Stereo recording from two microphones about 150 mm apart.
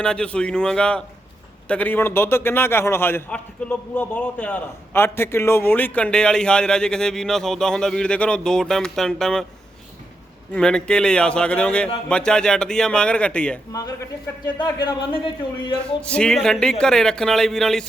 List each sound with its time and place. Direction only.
0.0 s a man's voice: 5° left (ahead or behind)
10.5 s a man's voice: 5° left (ahead or behind)
14.4 s speech: 30° left (ahead or behind)
16.0 s speech: 5° left (ahead or behind)